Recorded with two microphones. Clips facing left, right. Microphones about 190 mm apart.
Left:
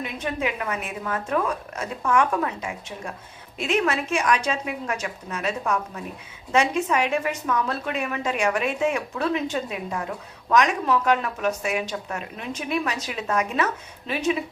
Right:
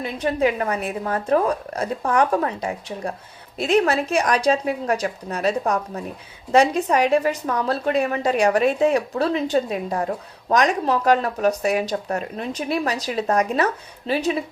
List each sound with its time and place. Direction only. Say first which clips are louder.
0.0 s a woman's voice: right 7 dB; 35° right (ahead or behind)